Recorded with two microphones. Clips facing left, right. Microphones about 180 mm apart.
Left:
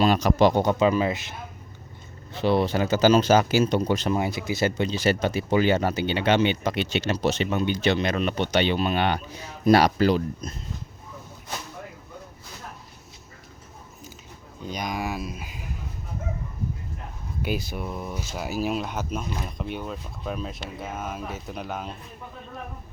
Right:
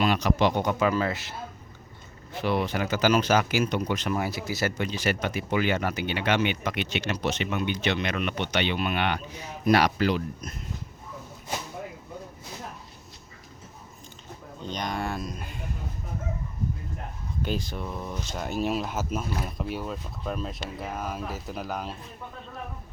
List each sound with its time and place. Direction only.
0.0 s speech: 40° left (ahead or behind); by 1.4 s 20° left (ahead or behind)
2.4 s speech: 30° left (ahead or behind)
14.6 s speech: 10° left (ahead or behind)
17.4 s speech: 10° left (ahead or behind)